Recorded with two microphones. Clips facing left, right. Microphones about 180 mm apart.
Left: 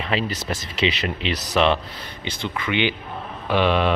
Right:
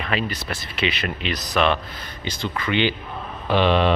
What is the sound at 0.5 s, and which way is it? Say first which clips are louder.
A man's voice: left 5 dB; 25° left (ahead or behind).